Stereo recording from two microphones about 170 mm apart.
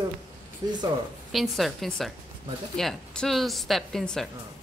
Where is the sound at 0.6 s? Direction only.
20° right (ahead or behind).